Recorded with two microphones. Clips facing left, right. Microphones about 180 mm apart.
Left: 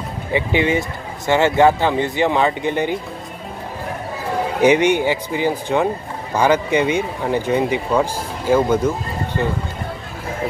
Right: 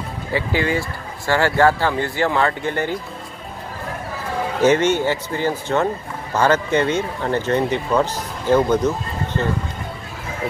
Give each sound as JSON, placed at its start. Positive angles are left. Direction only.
{"t": 0.3, "sound": "speech", "side_deg": 20}
{"t": 4.6, "sound": "speech", "side_deg": 15}